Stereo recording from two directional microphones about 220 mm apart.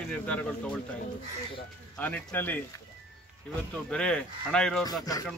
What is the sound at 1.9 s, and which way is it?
Speech, 10° left (ahead or behind).